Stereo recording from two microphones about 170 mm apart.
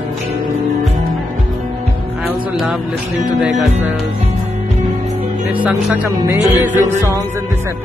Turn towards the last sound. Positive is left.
turn(degrees=-15)  # may be behind; listen again after turning